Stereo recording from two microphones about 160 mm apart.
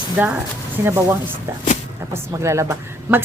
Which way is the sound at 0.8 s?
15° right (ahead or behind).